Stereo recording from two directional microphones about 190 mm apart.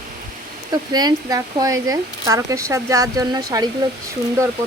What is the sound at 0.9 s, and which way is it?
Speech, 20° right (ahead or behind).